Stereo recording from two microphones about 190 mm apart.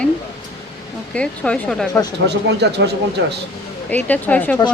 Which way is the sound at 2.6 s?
65° right (ahead or behind).